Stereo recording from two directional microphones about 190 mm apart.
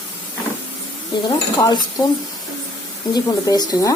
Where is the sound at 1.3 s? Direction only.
25° left (ahead or behind).